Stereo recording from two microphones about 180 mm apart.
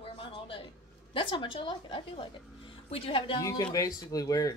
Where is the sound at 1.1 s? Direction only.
25° left (ahead or behind).